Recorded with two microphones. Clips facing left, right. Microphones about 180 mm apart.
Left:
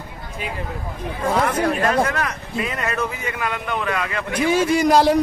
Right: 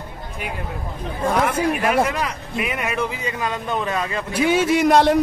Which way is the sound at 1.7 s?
10° right (ahead or behind).